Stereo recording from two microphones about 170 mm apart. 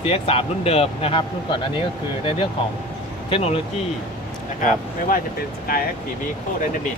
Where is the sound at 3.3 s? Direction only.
35° left (ahead or behind).